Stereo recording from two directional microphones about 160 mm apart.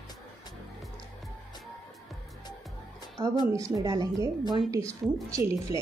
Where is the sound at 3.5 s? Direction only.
20° right (ahead or behind).